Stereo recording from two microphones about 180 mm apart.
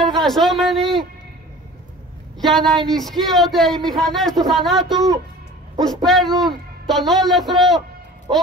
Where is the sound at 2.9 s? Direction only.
Centre (ahead or behind).